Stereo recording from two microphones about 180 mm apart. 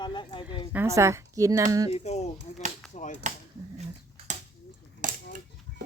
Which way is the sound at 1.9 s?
40° left (ahead or behind).